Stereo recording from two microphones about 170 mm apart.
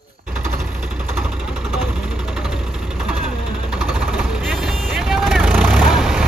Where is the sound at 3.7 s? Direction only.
5° right (ahead or behind).